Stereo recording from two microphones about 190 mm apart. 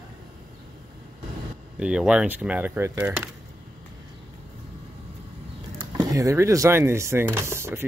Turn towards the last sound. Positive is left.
turn(degrees=-15)  # may be behind; listen again after turning